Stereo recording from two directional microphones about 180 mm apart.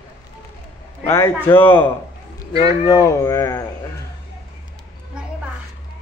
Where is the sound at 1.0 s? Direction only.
15° left (ahead or behind).